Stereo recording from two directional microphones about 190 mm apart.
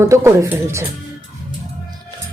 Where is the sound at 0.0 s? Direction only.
15° right (ahead or behind).